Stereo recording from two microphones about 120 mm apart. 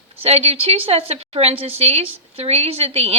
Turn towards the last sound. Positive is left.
turn(degrees=-60)  # may be behind; listen again after turning